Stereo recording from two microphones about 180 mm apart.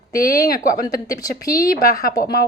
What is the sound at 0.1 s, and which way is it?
Speech, 55° left (ahead or behind).